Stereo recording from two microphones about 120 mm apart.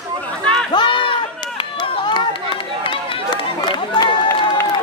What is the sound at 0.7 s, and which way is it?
Run, 45° left (ahead or behind).